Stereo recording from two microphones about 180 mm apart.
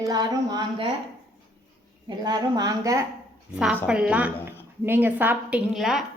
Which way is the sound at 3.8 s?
5° right (ahead or behind).